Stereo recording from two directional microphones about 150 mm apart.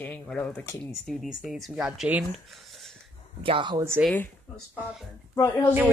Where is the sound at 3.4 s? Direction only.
35° right (ahead or behind).